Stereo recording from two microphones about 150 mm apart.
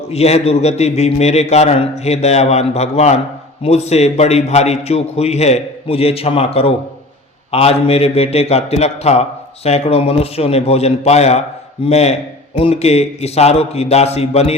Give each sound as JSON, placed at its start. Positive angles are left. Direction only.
{"t": 0.1, "sound": "a man's voice", "side_deg": 45}